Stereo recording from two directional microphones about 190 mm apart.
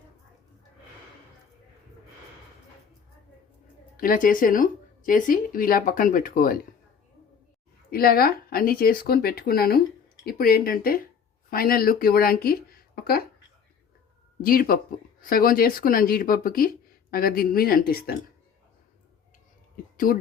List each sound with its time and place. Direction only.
3.9 s speech: 45° left (ahead or behind)
7.9 s speech: 50° left (ahead or behind)
14.4 s speech: 50° left (ahead or behind)